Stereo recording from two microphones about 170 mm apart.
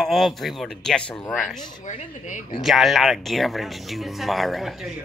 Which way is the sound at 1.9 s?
45° left (ahead or behind).